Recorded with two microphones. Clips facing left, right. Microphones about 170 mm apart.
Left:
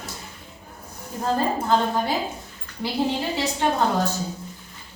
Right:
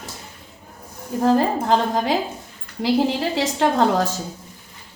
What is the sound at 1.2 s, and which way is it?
A woman's voice, 90° right.